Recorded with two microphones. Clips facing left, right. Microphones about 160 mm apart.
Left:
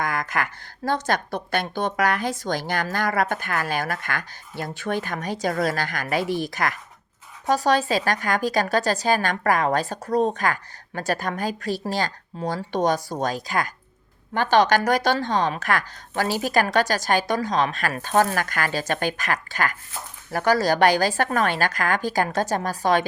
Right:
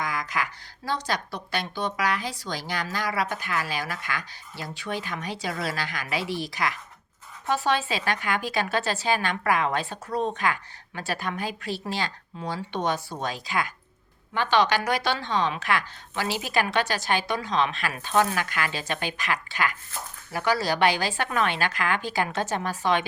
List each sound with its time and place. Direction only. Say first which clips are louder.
0.0 s a woman's voice: left 4 dB; 50° left (ahead or behind)